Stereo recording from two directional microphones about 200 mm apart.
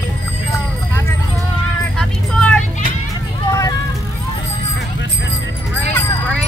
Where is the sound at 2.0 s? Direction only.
5° left (ahead or behind).